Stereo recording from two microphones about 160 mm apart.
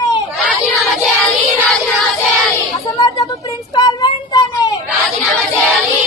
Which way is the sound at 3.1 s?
20° left (ahead or behind).